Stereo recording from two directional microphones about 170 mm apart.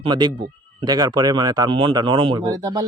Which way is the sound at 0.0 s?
25° right (ahead or behind).